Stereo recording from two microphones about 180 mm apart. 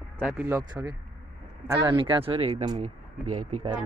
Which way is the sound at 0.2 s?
10° right (ahead or behind).